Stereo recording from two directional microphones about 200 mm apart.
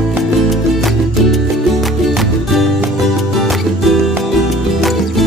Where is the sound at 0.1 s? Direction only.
Centre (ahead or behind).